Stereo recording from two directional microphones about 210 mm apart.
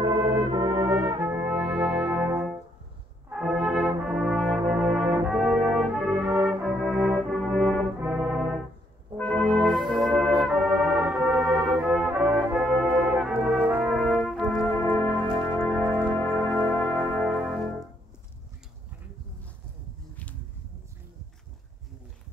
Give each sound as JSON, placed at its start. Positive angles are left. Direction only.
{"t": 0.0, "sound": "brass instrument", "side_deg": -30}
{"t": 1.9, "sound": "music", "side_deg": -15}
{"t": 3.3, "sound": "brass instrument", "side_deg": -5}
{"t": 9.1, "sound": "music", "side_deg": 5}
{"t": 10.1, "sound": "brass instrument", "side_deg": 0}
{"t": 13.9, "sound": "brass instrument", "side_deg": 5}
{"t": 15.8, "sound": "music", "side_deg": -10}
{"t": 16.3, "sound": "music", "side_deg": 0}